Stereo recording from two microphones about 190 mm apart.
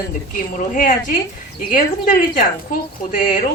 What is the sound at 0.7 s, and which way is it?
Speech, 45° left (ahead or behind).